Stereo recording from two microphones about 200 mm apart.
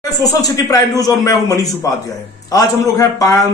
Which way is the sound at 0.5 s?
20° left (ahead or behind).